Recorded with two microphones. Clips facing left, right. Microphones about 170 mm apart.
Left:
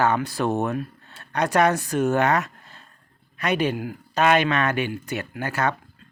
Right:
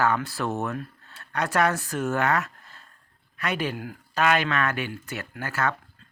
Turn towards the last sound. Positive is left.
turn(degrees=20)  # may be behind; listen again after turning